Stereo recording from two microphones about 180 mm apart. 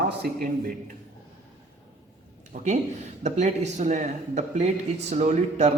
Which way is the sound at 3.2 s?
40° right (ahead or behind).